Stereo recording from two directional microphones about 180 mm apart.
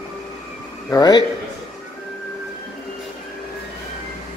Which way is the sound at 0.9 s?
20° left (ahead or behind).